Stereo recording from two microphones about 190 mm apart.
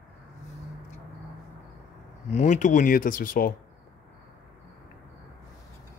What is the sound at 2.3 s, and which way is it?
Speech, 40° left (ahead or behind).